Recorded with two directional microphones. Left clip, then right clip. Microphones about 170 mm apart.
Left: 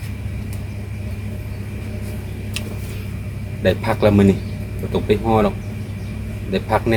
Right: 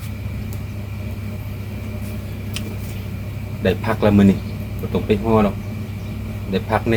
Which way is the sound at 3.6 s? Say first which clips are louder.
Left 2 dB; 25° left (ahead or behind).